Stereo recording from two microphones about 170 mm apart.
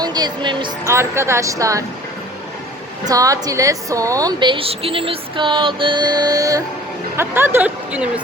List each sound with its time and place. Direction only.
0.0 s speech: 25° right (ahead or behind)
0.9 s speech: 15° right (ahead or behind)
3.1 s a woman's voice: 20° right (ahead or behind)